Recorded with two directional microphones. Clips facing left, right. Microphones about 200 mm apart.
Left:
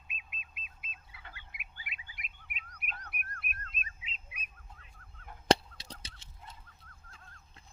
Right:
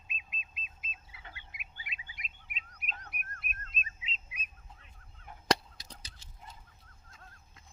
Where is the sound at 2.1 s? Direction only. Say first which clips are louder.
Even; 55° left (ahead or behind).